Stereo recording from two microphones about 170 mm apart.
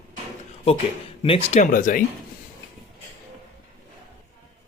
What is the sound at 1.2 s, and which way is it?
Speech, 35° left (ahead or behind).